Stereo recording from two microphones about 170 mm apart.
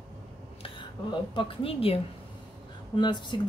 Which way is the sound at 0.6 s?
30° left (ahead or behind).